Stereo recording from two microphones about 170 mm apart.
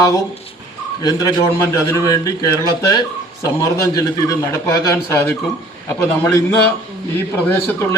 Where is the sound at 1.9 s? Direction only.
20° left (ahead or behind).